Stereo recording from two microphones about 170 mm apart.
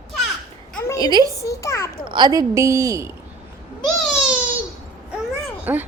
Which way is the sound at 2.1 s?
25° right (ahead or behind).